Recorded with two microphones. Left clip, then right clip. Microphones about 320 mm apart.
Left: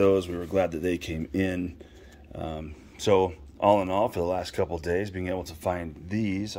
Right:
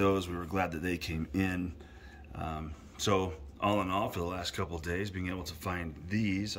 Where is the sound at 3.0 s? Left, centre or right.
Centre.